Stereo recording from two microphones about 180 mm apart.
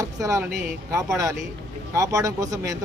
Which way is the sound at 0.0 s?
20° right (ahead or behind).